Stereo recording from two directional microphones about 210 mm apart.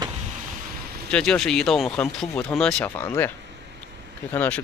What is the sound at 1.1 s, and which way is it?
Speech, 5° left (ahead or behind).